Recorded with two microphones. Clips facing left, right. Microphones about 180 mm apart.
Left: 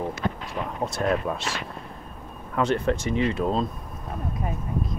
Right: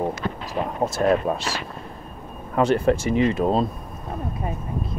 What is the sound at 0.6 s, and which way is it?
Speech, 45° right (ahead or behind).